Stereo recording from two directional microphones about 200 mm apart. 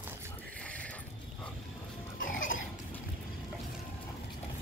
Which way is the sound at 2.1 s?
75° left (ahead or behind).